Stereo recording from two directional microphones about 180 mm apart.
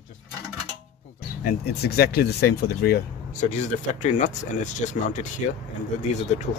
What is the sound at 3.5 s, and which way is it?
Speech, 40° left (ahead or behind).